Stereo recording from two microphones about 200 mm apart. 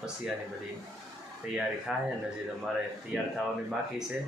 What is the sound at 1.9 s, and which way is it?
Speech, centre (ahead or behind).